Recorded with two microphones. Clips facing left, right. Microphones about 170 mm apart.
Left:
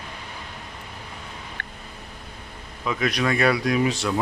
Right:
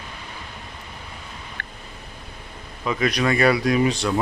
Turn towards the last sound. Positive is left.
turn(degrees=0)  # may be behind; listen again after turning